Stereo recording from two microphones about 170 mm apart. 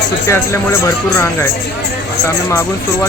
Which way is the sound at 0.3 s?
15° left (ahead or behind).